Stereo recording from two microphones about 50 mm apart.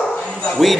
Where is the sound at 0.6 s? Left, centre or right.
Centre.